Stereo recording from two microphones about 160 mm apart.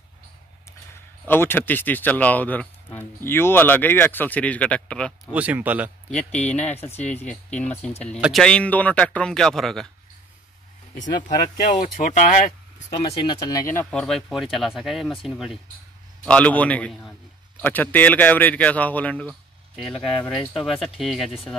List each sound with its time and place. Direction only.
1.2 s speech: 15° left (ahead or behind)
5.3 s speech: 10° right (ahead or behind)
6.1 s speech: 5° left (ahead or behind)
6.9 s speech: 45° left (ahead or behind)
7.2 s speech: 10° left (ahead or behind)
11.1 s speech: 50° left (ahead or behind)
12.9 s speech: 30° left (ahead or behind); by 21.3 s centre (ahead or behind)